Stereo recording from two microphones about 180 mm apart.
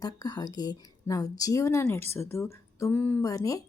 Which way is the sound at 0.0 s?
20° left (ahead or behind).